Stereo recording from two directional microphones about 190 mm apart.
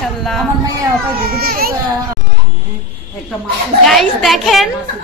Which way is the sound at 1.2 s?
50° right (ahead or behind).